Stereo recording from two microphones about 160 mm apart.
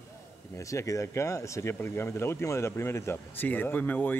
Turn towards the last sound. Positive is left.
turn(degrees=10)  # may be behind; listen again after turning